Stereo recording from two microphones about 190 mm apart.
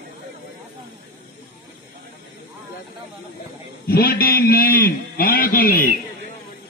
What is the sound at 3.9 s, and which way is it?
A man's voice, 55° left (ahead or behind).